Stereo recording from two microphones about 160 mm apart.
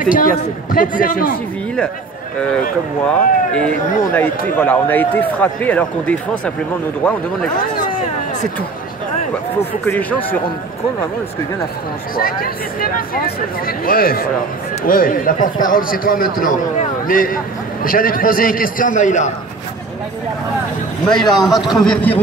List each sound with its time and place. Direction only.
0.0 s a man's voice: 60° left (ahead or behind)
3.1 s speech: 5° left (ahead or behind)
9.8 s speech: 10° left (ahead or behind)
12.2 s a man's voice: 65° left (ahead or behind); by 19.3 s 50° left (ahead or behind)
21.2 s a man's voice: 25° left (ahead or behind)
21.7 s a man's voice: 5° left (ahead or behind)